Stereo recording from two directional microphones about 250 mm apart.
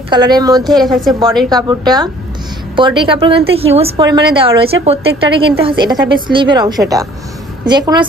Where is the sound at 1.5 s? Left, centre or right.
Centre.